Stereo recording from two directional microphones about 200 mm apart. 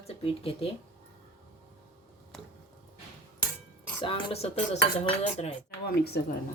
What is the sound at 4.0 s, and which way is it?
Speech, 25° left (ahead or behind).